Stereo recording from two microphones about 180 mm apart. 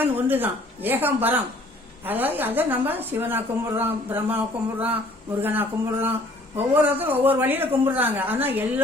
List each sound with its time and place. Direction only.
0.0 s a woman's voice: 10° right (ahead or behind)